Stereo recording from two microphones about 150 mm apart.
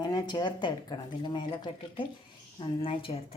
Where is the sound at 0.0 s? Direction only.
25° left (ahead or behind).